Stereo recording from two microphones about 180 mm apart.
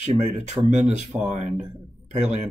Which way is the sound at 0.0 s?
40° right (ahead or behind).